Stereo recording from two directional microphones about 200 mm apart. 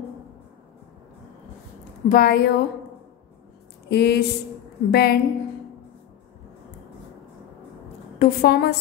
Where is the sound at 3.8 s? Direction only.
55° left (ahead or behind).